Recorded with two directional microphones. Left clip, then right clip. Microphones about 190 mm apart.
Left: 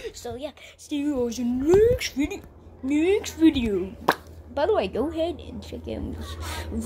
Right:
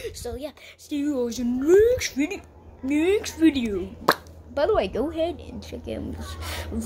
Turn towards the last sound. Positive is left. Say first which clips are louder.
# right 1 dB
turn(degrees=0)  # may be behind; listen again after turning